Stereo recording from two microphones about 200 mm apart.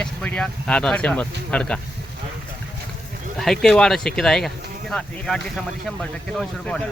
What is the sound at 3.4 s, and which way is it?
Speech, centre (ahead or behind).